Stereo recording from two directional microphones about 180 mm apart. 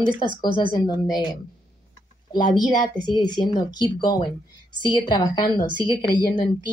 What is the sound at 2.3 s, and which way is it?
Speech, 25° left (ahead or behind).